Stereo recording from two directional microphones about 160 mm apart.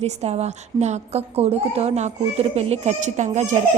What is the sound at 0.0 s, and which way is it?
A woman's voice, 40° right (ahead or behind).